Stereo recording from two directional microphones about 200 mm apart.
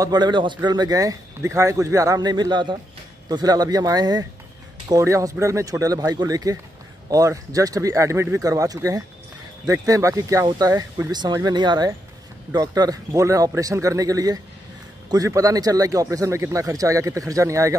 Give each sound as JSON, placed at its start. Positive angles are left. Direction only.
{"t": 0.0, "sound": "speech", "side_deg": -20}